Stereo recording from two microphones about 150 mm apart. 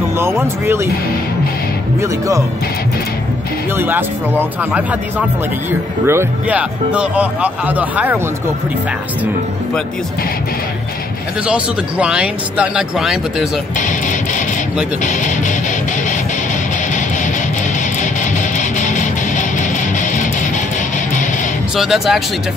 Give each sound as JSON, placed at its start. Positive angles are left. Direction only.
{"t": 0.2, "sound": "speech", "side_deg": -15}
{"t": 2.0, "sound": "speech", "side_deg": -20}
{"t": 3.7, "sound": "speech", "side_deg": -15}
{"t": 11.4, "sound": "speech", "side_deg": -5}
{"t": 18.6, "sound": "music", "side_deg": 55}
{"t": 21.7, "sound": "speech", "side_deg": 0}